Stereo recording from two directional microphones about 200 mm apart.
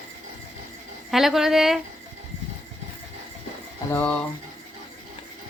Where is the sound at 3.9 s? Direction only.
5° left (ahead or behind).